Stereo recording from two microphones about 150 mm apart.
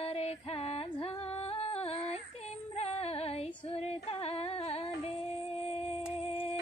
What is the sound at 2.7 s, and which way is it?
Female singing, 45° left (ahead or behind).